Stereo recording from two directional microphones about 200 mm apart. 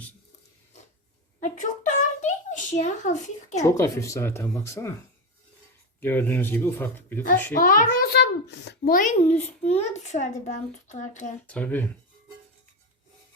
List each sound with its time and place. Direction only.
1.4 s a sound: 40° left (ahead or behind)
3.6 s speech: 15° left (ahead or behind)
6.0 s speech: 10° left (ahead or behind)
7.6 s a child's voice: 45° left (ahead or behind)
11.4 s speech: 5° left (ahead or behind)